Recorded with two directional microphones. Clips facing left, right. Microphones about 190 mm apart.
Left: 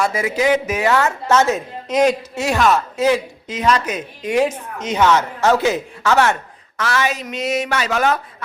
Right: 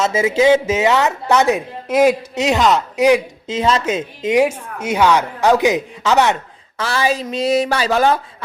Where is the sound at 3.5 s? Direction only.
25° right (ahead or behind).